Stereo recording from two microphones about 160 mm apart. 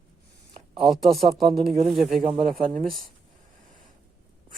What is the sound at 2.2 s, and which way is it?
Speech, 35° right (ahead or behind).